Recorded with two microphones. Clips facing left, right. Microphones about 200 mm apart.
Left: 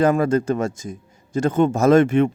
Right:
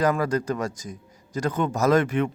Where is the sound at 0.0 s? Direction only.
25° left (ahead or behind).